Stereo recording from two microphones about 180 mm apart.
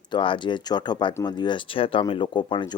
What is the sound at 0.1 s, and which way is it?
Speech, 25° left (ahead or behind).